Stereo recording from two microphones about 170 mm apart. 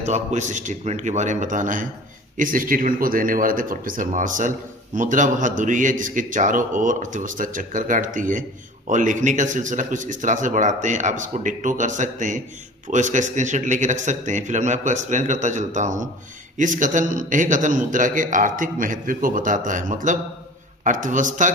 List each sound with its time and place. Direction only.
0.0 s a man's voice: 40° right (ahead or behind)